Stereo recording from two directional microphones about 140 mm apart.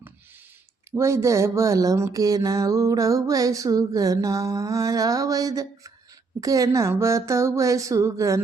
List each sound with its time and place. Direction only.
0.9 s speech: 20° right (ahead or behind)